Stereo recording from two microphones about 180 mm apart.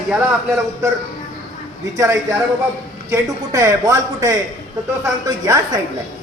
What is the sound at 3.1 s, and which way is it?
Speech, 15° right (ahead or behind).